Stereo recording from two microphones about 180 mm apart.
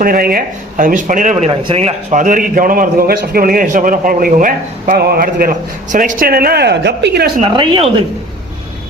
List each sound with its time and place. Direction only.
0.0 s a man's voice: 55° right (ahead or behind)
1.5 s a man's voice: 30° right (ahead or behind); by 7.3 s 70° right (ahead or behind)
7.4 s speech: 25° right (ahead or behind)